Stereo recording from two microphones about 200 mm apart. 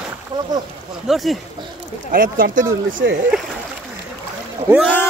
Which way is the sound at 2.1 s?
45° right (ahead or behind).